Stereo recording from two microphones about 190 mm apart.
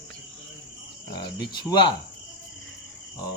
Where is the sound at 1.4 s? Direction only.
25° left (ahead or behind).